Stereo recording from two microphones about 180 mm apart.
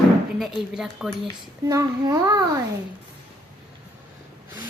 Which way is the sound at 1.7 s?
20° right (ahead or behind).